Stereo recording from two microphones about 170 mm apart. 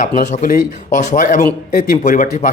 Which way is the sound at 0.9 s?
50° left (ahead or behind).